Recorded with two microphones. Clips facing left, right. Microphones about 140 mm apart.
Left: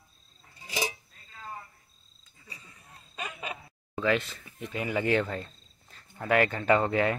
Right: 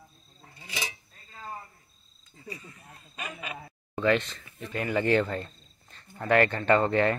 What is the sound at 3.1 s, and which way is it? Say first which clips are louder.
Speech: left 1 dB; 30° left (ahead or behind).